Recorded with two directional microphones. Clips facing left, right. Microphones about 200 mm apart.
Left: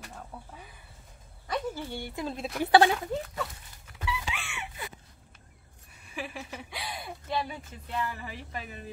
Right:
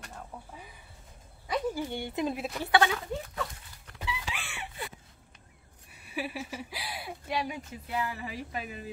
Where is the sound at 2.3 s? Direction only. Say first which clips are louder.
Even; centre (ahead or behind).